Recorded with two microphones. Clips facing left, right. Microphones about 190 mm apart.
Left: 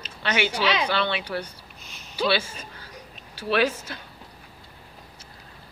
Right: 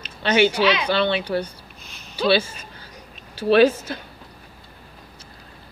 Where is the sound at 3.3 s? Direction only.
30° right (ahead or behind).